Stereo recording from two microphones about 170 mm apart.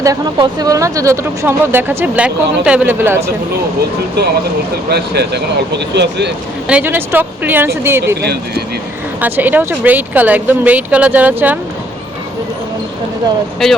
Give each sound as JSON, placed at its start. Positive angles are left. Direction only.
{"t": 0.0, "sound": "speech", "side_deg": -20}
{"t": 4.9, "sound": "speech", "side_deg": -75}
{"t": 6.7, "sound": "speech", "side_deg": -10}
{"t": 8.2, "sound": "speech", "side_deg": -75}
{"t": 9.2, "sound": "speech", "side_deg": -10}
{"t": 13.6, "sound": "speech", "side_deg": 0}